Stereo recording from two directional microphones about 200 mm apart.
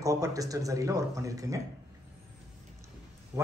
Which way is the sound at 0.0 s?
15° right (ahead or behind).